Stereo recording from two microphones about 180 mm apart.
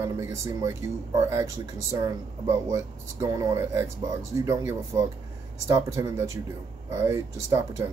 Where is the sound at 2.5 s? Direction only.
20° right (ahead or behind).